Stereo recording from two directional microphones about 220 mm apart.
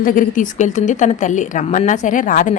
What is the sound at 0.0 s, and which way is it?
Speech, 35° left (ahead or behind).